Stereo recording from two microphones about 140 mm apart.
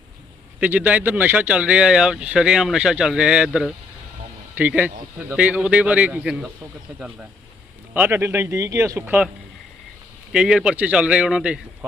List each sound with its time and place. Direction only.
0.6 s speech: 10° right (ahead or behind)
7.9 s speech: 15° right (ahead or behind)
10.3 s speech: 5° right (ahead or behind)